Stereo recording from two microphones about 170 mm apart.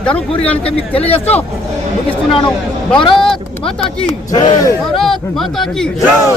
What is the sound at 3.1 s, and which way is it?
Speech, centre (ahead or behind).